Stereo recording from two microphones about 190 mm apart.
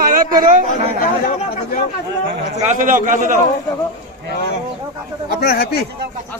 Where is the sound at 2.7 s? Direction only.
45° right (ahead or behind).